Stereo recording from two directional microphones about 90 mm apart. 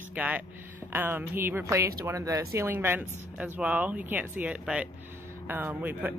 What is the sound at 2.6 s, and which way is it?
Speech, 25° right (ahead or behind).